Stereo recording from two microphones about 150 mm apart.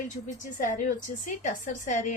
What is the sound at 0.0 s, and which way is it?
A woman's voice, 60° left (ahead or behind).